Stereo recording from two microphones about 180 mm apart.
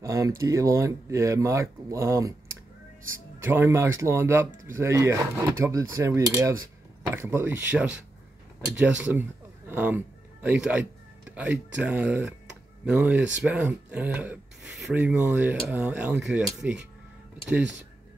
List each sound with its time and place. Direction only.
0.0 s speech: 20° right (ahead or behind)